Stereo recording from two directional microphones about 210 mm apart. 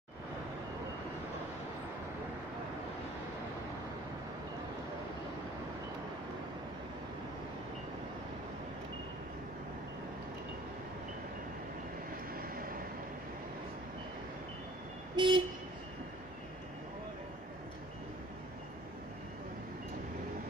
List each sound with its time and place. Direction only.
12.4 s vehicle: 45° right (ahead or behind)
15.1 s vehicle: 20° right (ahead or behind)